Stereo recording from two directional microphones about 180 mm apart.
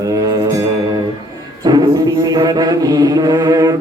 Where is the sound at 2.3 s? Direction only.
20° right (ahead or behind).